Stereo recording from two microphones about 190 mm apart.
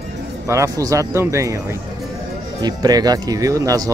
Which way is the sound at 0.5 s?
15° right (ahead or behind).